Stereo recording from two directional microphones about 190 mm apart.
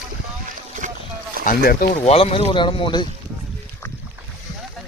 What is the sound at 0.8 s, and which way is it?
Boat, 40° right (ahead or behind).